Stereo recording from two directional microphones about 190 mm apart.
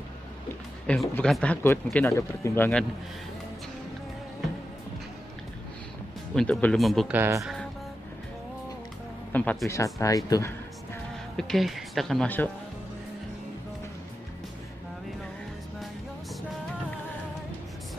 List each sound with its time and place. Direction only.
0.8 s speech: 5° left (ahead or behind)
6.3 s speech: 5° left (ahead or behind)
7.2 s speech: 15° right (ahead or behind)
9.3 s speech: 5° left (ahead or behind)
11.3 s speech: centre (ahead or behind)